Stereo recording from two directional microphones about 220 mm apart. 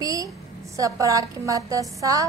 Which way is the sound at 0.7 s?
15° right (ahead or behind).